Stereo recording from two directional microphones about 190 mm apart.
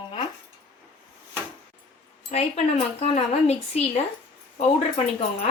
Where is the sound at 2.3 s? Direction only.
40° left (ahead or behind).